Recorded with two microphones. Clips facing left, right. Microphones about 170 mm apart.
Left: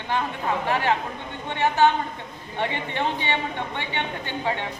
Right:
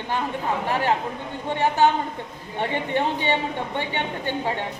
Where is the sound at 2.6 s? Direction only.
45° right (ahead or behind).